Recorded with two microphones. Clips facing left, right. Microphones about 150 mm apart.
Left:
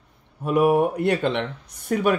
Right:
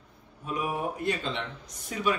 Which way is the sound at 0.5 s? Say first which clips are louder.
Left 13 dB; 65° left (ahead or behind).